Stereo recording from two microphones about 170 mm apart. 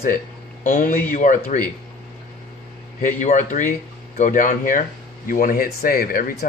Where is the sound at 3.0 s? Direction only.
45° left (ahead or behind).